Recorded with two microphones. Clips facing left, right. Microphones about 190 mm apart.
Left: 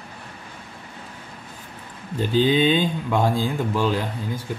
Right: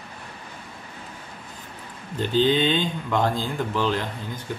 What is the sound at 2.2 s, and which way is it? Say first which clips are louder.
Speech: left 2 dB; 10° left (ahead or behind).